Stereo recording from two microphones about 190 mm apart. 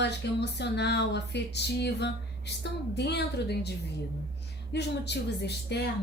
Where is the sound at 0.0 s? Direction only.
65° left (ahead or behind).